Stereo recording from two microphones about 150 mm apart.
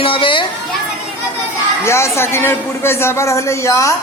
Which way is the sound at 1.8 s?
20° left (ahead or behind).